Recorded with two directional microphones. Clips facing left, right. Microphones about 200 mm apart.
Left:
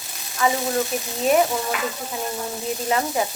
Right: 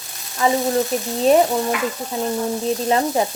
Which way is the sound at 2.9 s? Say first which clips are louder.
Right 3 dB; 30° right (ahead or behind).